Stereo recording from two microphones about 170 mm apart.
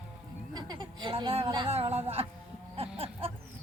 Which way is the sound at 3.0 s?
35° right (ahead or behind).